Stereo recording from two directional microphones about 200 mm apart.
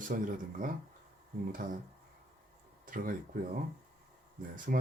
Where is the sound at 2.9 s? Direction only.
45° right (ahead or behind).